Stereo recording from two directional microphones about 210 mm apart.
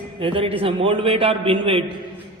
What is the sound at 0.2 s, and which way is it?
A man's voice, 25° right (ahead or behind).